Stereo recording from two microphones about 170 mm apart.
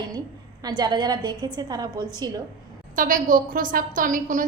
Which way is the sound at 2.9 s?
50° right (ahead or behind).